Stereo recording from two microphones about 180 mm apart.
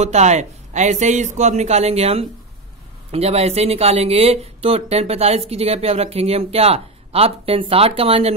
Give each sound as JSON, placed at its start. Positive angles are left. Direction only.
{"t": 0.0, "sound": "speech", "side_deg": -40}